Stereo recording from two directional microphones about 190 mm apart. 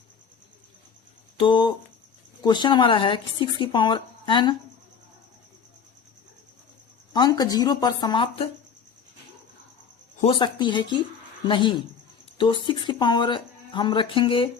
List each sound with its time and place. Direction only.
1.4 s speech: 25° left (ahead or behind)
7.1 s speech: 20° left (ahead or behind)
10.2 s speech: 25° left (ahead or behind)